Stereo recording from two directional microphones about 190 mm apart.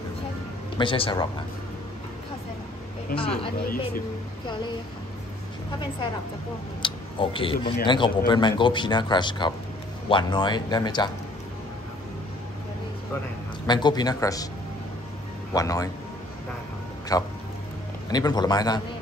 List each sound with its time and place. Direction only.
0.7 s speech: 25° left (ahead or behind)
3.1 s speech: 50° left (ahead or behind)
6.8 s speech: 25° left (ahead or behind)
13.7 s speech: 25° left (ahead or behind)
15.5 s a man's voice: 20° left (ahead or behind)
17.1 s speech: 20° left (ahead or behind)